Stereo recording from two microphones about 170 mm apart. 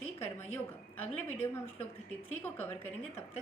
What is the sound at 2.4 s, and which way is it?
Speech, 10° left (ahead or behind).